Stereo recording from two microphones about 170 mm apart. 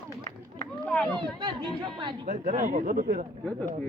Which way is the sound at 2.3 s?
50° right (ahead or behind).